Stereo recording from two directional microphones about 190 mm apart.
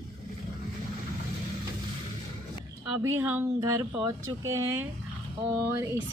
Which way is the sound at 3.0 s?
15° right (ahead or behind).